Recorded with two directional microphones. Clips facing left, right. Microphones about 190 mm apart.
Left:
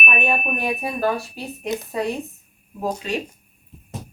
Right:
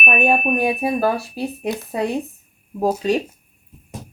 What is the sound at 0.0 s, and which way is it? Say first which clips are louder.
Speech: right 5 dB; 40° right (ahead or behind).